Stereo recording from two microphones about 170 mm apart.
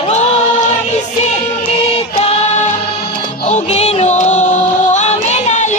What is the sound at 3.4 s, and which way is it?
Music, 40° left (ahead or behind).